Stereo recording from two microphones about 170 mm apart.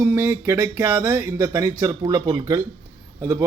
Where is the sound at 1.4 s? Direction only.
20° right (ahead or behind).